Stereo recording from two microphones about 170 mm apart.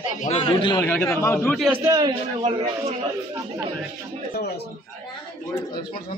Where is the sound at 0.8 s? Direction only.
10° left (ahead or behind).